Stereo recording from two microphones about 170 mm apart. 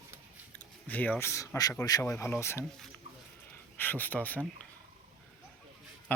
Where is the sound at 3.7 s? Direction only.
10° left (ahead or behind).